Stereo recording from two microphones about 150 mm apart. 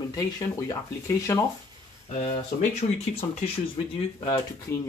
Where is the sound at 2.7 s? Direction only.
45° left (ahead or behind).